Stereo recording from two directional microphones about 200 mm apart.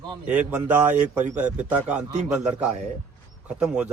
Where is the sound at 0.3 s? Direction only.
5° right (ahead or behind).